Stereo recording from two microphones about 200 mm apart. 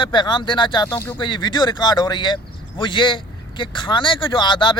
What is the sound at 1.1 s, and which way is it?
Speech, 25° left (ahead or behind).